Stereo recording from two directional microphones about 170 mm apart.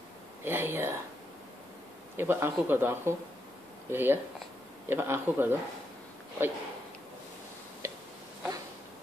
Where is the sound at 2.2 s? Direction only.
15° right (ahead or behind).